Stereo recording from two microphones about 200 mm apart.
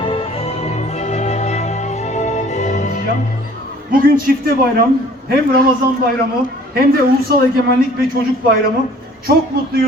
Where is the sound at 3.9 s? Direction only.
45° right (ahead or behind).